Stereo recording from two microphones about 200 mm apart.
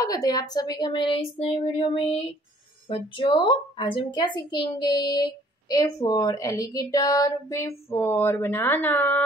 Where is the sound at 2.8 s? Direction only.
25° left (ahead or behind).